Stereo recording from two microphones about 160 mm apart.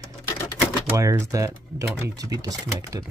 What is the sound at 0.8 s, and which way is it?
Speech, 15° right (ahead or behind).